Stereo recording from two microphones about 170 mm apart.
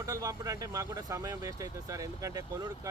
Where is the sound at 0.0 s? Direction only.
20° right (ahead or behind).